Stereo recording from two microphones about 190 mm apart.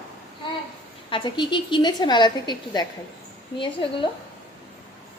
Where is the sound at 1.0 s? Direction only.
25° left (ahead or behind).